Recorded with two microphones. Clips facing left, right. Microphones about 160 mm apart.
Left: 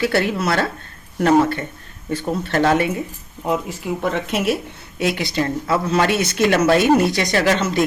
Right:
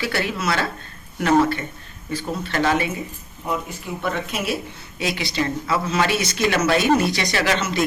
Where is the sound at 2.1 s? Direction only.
55° left (ahead or behind).